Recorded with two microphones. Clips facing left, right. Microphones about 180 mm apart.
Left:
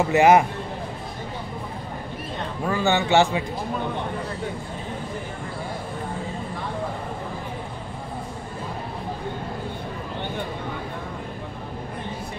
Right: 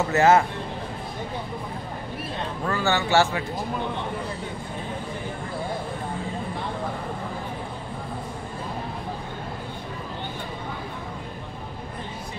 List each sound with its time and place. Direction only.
0.0 s speech: 15° left (ahead or behind)
2.6 s speech: 15° left (ahead or behind)